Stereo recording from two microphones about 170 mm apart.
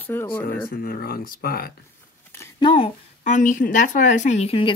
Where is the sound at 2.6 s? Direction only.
30° left (ahead or behind).